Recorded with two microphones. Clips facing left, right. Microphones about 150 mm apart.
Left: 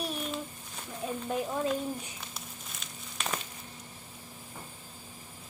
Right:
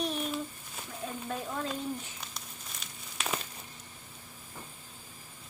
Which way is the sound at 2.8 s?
5° right (ahead or behind).